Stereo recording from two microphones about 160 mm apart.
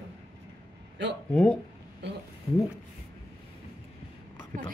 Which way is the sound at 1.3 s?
5° left (ahead or behind).